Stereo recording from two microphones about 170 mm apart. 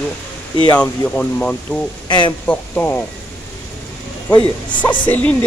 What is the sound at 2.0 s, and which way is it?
Speech, 25° left (ahead or behind).